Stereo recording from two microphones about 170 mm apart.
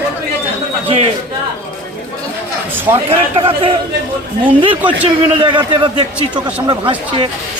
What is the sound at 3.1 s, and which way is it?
A man's voice, 30° right (ahead or behind).